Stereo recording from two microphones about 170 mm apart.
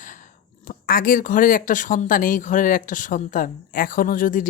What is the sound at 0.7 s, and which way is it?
Speech, 55° left (ahead or behind).